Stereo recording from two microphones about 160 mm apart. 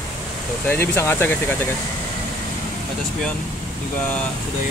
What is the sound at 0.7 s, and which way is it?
Speech, 15° left (ahead or behind).